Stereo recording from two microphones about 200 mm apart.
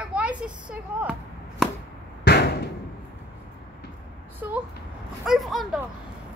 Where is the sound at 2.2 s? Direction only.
55° left (ahead or behind).